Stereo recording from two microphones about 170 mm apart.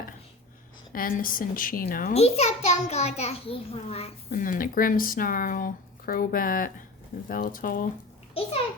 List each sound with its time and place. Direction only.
0.9 s speech: 55° left (ahead or behind)
2.1 s a child's voice: 35° left (ahead or behind)
4.3 s speech: 55° left (ahead or behind)
8.4 s a sound: 35° left (ahead or behind)